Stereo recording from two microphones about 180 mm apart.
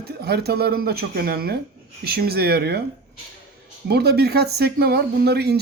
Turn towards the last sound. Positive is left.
turn(degrees=-65)  # may be behind; listen again after turning